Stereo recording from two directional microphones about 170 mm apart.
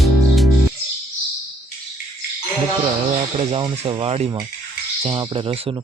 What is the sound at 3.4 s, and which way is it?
Speech, 35° right (ahead or behind).